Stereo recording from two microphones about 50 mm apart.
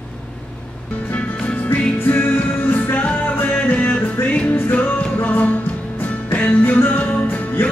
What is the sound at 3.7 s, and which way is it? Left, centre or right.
Music, left.